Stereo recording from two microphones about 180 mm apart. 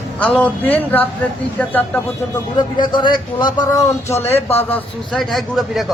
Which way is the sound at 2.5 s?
25° left (ahead or behind).